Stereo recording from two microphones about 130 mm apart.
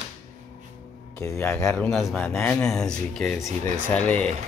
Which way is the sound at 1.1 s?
20° left (ahead or behind).